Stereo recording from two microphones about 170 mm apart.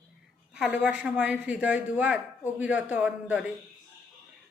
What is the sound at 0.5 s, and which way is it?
Speech, 5° right (ahead or behind).